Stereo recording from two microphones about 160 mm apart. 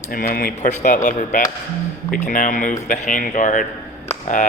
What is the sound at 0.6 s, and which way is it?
Speech, 50° left (ahead or behind).